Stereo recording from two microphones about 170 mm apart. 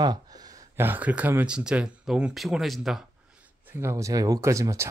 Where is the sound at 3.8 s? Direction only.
20° right (ahead or behind).